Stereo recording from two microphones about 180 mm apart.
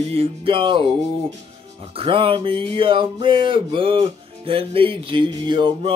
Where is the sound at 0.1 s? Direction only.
30° right (ahead or behind).